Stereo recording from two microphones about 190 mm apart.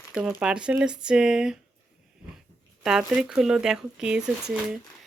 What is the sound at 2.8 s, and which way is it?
Speech, 5° right (ahead or behind).